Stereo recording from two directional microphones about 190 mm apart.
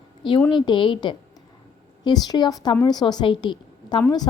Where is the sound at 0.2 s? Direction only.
25° left (ahead or behind).